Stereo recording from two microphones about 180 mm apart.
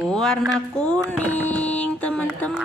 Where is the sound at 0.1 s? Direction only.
Centre (ahead or behind).